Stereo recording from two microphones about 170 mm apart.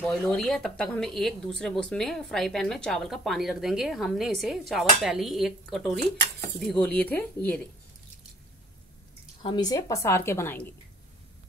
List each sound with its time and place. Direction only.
0.0 s a woman's voice: 5° left (ahead or behind)
9.4 s a woman's voice: 25° left (ahead or behind)